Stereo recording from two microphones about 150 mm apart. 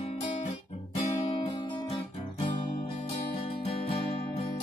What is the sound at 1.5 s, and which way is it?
Guitar, 35° left (ahead or behind).